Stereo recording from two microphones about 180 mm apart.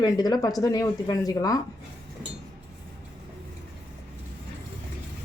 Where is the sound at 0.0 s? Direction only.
20° left (ahead or behind).